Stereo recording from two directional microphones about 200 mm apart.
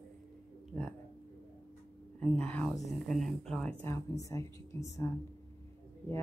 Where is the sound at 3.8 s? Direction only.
15° left (ahead or behind).